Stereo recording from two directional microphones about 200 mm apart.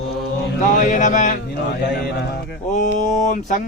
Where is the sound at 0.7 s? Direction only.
40° left (ahead or behind).